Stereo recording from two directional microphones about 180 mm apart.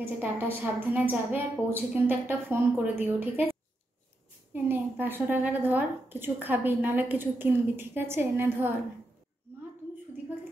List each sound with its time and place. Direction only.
0.0 s a woman's voice: 10° right (ahead or behind)
4.6 s a woman's voice: 10° right (ahead or behind)